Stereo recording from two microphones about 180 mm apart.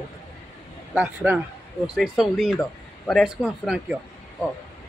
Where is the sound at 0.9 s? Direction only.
5° right (ahead or behind).